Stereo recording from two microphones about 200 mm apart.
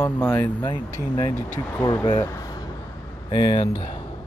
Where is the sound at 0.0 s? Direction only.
10° left (ahead or behind).